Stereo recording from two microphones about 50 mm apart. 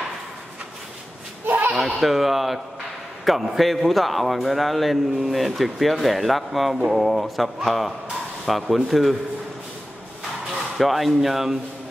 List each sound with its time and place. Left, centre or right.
1.4 s a sound: right
2.0 s a man's voice: centre
10.8 s a man's voice: centre